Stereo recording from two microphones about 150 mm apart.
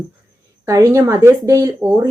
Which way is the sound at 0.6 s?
20° right (ahead or behind).